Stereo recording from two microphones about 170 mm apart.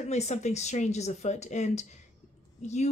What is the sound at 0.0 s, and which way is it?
A woman's voice, 40° left (ahead or behind).